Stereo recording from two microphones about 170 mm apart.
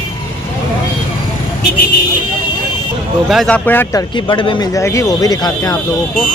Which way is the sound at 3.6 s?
10° left (ahead or behind).